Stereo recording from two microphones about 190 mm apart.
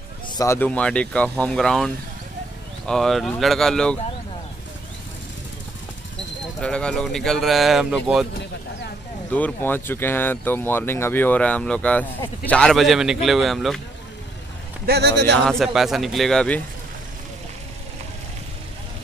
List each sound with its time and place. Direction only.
0.3 s speech: 15° left (ahead or behind)
2.9 s speech: centre (ahead or behind)
6.6 s speech: 5° left (ahead or behind)
9.3 s speech: 10° left (ahead or behind)
14.9 s speech: 60° right (ahead or behind)
15.4 s speech: centre (ahead or behind)